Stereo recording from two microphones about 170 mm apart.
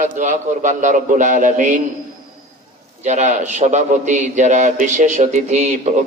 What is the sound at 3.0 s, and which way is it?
A man's voice, 45° right (ahead or behind).